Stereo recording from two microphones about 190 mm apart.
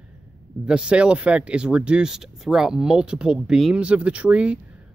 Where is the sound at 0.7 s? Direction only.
5° right (ahead or behind).